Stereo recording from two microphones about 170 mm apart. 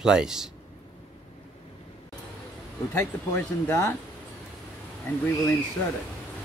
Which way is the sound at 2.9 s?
15° left (ahead or behind).